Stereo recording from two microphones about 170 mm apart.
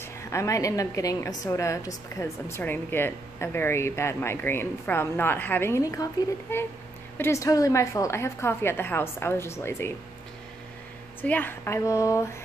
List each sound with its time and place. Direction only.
0.0 s a woman's voice: 15° left (ahead or behind)
11.1 s a woman's voice: 10° left (ahead or behind)